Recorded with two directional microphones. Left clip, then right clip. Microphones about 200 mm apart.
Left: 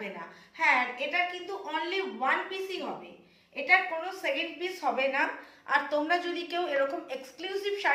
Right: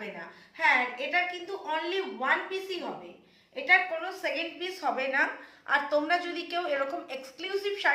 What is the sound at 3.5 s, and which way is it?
A woman's voice, 15° right (ahead or behind).